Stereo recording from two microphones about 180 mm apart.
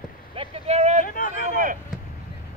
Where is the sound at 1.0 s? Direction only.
45° left (ahead or behind).